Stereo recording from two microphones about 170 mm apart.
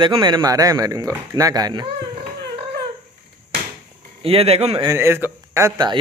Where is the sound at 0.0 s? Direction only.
25° right (ahead or behind).